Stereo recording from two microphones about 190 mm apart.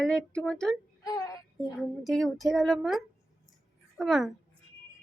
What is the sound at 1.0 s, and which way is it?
Speech, 15° left (ahead or behind).